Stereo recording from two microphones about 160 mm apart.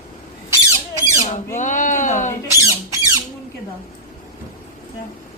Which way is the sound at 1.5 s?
50° left (ahead or behind).